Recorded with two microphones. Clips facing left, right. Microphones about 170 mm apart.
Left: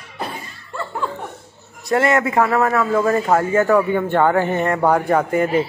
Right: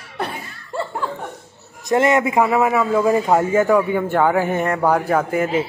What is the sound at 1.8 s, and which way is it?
A man's voice, 20° right (ahead or behind).